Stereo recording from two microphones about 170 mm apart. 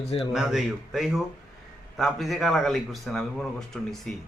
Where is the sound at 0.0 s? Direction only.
35° left (ahead or behind).